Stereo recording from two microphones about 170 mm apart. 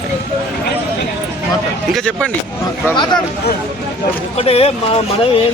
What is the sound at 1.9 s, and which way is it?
Speech, 5° left (ahead or behind).